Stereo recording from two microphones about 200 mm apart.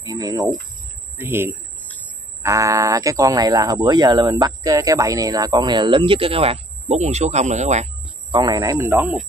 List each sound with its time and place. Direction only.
0.0 s bird: 20° right (ahead or behind)
1.1 s speech: 10° right (ahead or behind); by 7.9 s 35° right (ahead or behind)
8.3 s speech: 20° right (ahead or behind)